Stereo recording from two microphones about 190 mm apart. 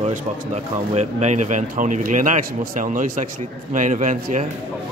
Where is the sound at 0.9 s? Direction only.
40° right (ahead or behind).